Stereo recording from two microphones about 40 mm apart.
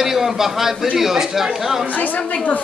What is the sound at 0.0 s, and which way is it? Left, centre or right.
A man's voice, centre.